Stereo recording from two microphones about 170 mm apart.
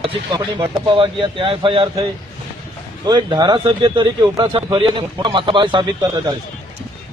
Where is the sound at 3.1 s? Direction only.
25° right (ahead or behind).